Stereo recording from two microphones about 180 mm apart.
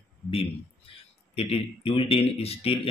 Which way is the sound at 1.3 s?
35° left (ahead or behind).